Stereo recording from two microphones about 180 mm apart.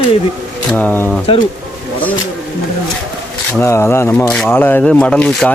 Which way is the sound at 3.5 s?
15° left (ahead or behind).